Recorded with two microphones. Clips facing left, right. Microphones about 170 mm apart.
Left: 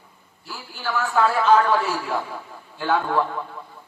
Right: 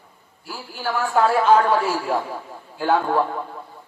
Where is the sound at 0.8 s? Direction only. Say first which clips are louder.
Right 2 dB; 35° right (ahead or behind).